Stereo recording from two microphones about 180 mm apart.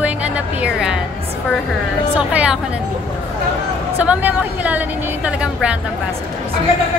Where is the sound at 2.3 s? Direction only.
5° right (ahead or behind).